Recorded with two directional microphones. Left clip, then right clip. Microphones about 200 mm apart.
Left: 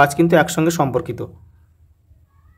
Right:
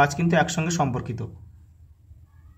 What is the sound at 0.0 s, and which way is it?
Speech, 45° left (ahead or behind).